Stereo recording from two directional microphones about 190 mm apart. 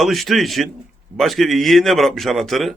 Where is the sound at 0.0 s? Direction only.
Centre (ahead or behind).